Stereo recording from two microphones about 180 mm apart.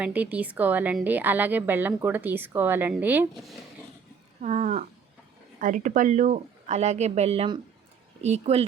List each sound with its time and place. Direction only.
0.0 s speech: 10° right (ahead or behind)
4.4 s speech: 40° right (ahead or behind)